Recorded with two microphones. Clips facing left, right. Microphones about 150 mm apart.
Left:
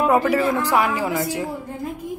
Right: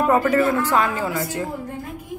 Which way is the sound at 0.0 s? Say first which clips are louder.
Even; 10° left (ahead or behind).